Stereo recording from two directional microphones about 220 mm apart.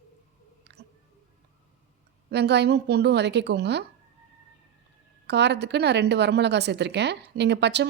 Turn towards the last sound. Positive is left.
turn(degrees=-50)  # may be behind; listen again after turning